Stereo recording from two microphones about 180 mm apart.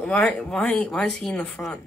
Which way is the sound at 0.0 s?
5° left (ahead or behind).